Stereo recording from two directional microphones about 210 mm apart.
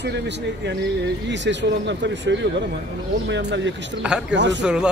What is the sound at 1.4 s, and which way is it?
A man's voice, 60° right (ahead or behind).